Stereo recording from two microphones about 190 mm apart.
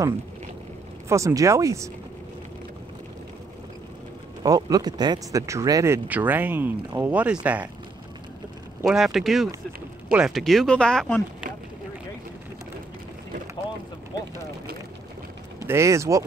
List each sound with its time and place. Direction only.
1.0 s speech: 15° right (ahead or behind)
4.4 s speech: 20° right (ahead or behind)
8.8 s speech: centre (ahead or behind)
15.6 s speech: 15° right (ahead or behind)